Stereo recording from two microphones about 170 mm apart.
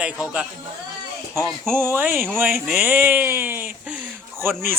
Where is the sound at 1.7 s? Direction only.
15° right (ahead or behind).